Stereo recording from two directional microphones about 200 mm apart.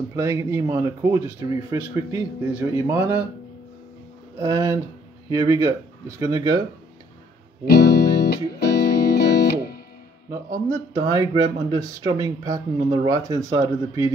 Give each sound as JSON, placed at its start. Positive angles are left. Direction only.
{"t": 0.1, "sound": "speech", "side_deg": -15}
{"t": 4.4, "sound": "speech", "side_deg": -15}
{"t": 7.7, "sound": "music", "side_deg": 55}
{"t": 10.3, "sound": "speech", "side_deg": -15}